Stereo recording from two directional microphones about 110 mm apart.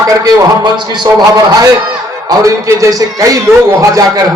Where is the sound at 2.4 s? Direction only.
30° right (ahead or behind).